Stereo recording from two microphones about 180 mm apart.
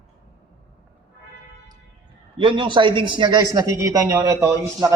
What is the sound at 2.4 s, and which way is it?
A man's voice, 30° right (ahead or behind).